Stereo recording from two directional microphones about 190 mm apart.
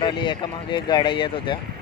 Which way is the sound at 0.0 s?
25° left (ahead or behind).